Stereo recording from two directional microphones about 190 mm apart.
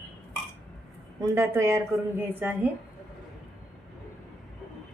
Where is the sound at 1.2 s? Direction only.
15° right (ahead or behind).